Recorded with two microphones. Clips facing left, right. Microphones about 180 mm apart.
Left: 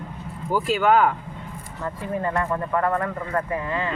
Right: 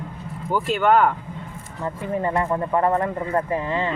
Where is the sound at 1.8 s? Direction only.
20° right (ahead or behind).